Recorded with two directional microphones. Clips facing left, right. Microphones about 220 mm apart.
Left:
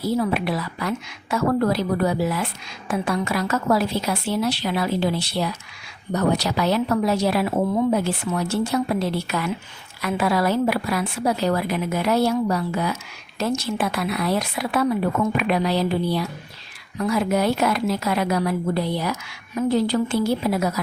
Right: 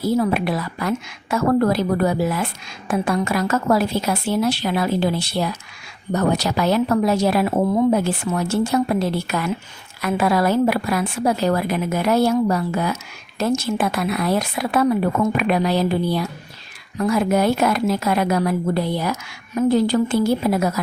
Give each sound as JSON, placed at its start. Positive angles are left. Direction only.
{"t": 0.0, "sound": "a woman's voice", "side_deg": -45}